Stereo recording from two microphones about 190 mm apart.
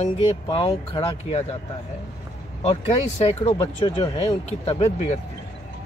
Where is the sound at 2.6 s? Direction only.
30° left (ahead or behind).